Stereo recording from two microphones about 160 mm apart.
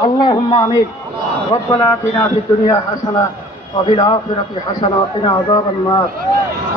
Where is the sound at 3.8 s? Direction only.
30° left (ahead or behind).